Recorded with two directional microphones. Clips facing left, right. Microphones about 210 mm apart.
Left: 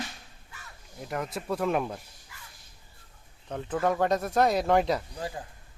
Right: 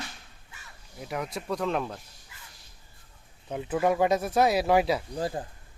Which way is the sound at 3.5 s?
10° right (ahead or behind).